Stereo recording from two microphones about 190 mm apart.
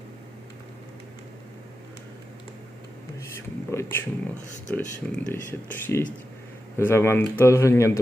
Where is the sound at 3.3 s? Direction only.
15° left (ahead or behind).